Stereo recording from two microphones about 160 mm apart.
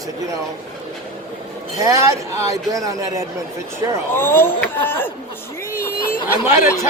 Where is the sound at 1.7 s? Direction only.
20° right (ahead or behind).